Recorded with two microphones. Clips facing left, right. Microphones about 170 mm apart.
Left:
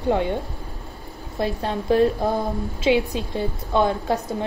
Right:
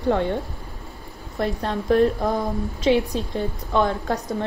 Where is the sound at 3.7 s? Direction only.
25° left (ahead or behind).